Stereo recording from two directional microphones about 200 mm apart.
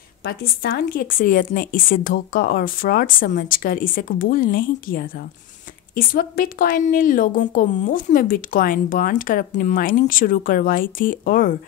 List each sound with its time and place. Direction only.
0.2 s a woman's voice: 50° left (ahead or behind)